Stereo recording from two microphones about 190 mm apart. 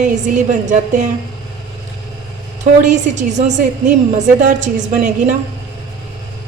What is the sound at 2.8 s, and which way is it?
Speech, 40° right (ahead or behind).